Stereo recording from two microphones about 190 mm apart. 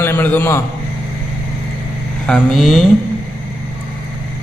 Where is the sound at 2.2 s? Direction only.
Centre (ahead or behind).